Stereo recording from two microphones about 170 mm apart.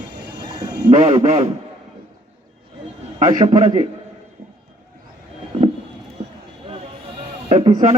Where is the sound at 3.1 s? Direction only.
40° right (ahead or behind).